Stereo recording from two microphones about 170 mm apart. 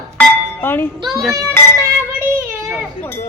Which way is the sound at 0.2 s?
10° left (ahead or behind).